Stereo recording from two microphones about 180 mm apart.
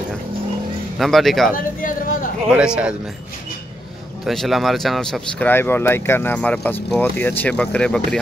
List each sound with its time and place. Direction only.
0.9 s speech: centre (ahead or behind)
1.5 s a sound: 50° left (ahead or behind)
2.5 s speech: 5° right (ahead or behind)
4.3 s speech: centre (ahead or behind)
5.5 s speech: 10° left (ahead or behind)